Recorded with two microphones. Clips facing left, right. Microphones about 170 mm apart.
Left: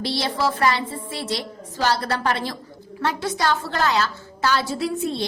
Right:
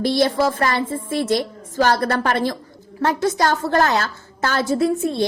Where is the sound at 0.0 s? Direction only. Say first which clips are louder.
Right 6 dB; 50° right (ahead or behind).